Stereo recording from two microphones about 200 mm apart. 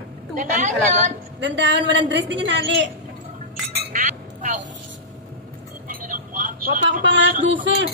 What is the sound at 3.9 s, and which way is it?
Chink, 40° right (ahead or behind).